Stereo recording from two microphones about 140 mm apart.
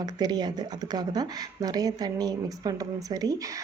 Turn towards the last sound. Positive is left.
turn(degrees=-25)  # may be behind; listen again after turning